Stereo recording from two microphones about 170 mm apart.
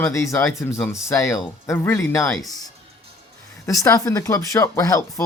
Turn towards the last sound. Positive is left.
turn(degrees=20)  # may be behind; listen again after turning